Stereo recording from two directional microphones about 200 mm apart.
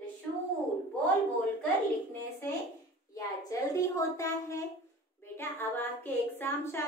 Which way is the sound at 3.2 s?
15° left (ahead or behind).